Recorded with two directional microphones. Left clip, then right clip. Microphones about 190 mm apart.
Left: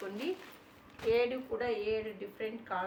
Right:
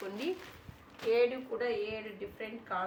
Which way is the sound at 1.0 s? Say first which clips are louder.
Right 1 dB; 25° left (ahead or behind).